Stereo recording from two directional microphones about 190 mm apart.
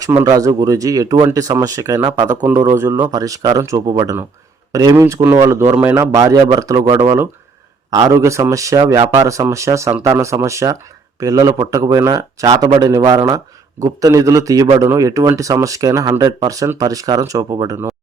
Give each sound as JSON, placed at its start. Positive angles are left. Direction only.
{"t": 0.0, "sound": "speech", "side_deg": -15}